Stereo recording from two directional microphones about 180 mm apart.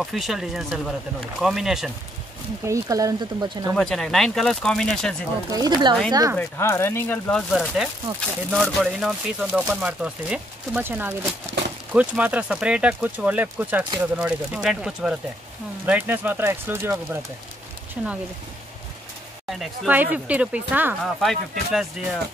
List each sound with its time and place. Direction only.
0.0 s speech: centre (ahead or behind)
2.6 s speech: 20° right (ahead or behind)
3.7 s speech: centre (ahead or behind)
5.7 s speech: 25° right (ahead or behind)
6.3 s speech: 15° left (ahead or behind); by 18.1 s 5° right (ahead or behind)
19.9 s speech: 10° right (ahead or behind)